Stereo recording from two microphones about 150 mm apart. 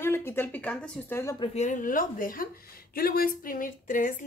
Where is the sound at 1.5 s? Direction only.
55° left (ahead or behind).